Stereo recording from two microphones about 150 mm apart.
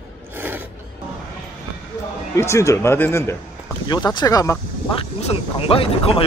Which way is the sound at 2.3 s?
20° left (ahead or behind).